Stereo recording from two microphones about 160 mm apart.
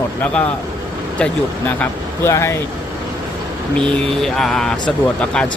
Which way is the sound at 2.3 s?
15° left (ahead or behind).